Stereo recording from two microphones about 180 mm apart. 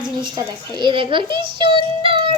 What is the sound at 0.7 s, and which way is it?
A child's voice, 25° right (ahead or behind).